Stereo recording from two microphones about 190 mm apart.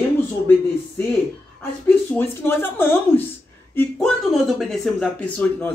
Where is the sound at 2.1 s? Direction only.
10° left (ahead or behind).